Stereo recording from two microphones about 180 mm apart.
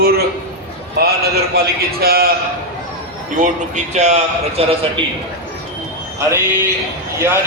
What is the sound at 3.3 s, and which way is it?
A man's voice, 45° right (ahead or behind).